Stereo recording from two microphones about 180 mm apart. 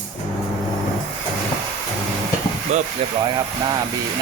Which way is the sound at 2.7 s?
40° right (ahead or behind).